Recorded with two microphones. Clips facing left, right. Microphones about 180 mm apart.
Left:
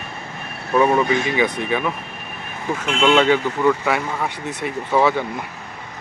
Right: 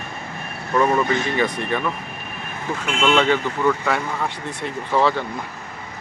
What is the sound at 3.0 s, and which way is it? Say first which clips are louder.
Speech: left 3 dB; 10° left (ahead or behind).